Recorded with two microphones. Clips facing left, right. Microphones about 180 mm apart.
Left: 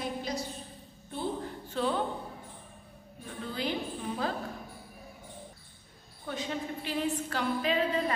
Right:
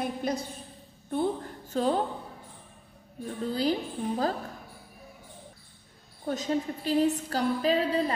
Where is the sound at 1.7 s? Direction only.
40° right (ahead or behind).